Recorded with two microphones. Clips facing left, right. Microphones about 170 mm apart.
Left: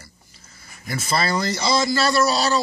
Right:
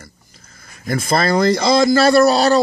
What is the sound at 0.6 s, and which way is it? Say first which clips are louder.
Speech: right 8 dB; 50° right (ahead or behind).